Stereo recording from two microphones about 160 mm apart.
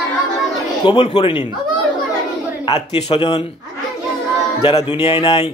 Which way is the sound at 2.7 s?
35° left (ahead or behind).